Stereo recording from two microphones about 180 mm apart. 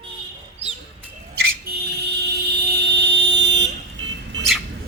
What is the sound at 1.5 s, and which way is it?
Fire alarm, 65° right (ahead or behind).